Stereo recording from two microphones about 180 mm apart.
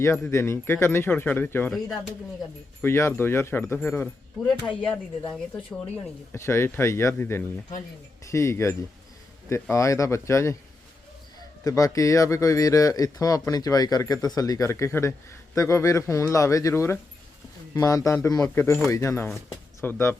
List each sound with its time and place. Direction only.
0.0 s speech: 15° left (ahead or behind)
2.8 s speech: 15° left (ahead or behind)
4.8 s speech: 25° left (ahead or behind)
6.3 s speech: 15° left (ahead or behind)
11.6 s speech: 20° left (ahead or behind)